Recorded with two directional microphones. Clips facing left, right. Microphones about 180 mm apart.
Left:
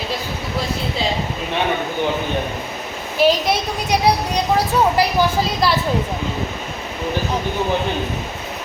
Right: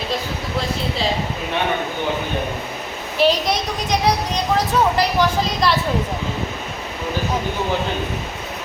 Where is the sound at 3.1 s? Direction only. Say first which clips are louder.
Left 1 dB; 5° left (ahead or behind).